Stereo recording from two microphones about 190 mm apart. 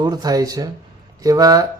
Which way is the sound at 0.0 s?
20° right (ahead or behind).